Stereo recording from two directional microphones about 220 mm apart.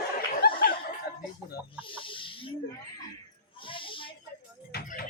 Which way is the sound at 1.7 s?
25° left (ahead or behind).